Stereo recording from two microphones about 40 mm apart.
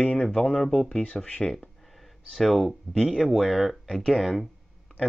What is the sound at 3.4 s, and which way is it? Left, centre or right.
Speech, centre.